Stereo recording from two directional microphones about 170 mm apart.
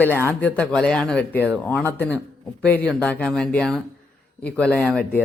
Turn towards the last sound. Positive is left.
turn(degrees=10)  # may be behind; listen again after turning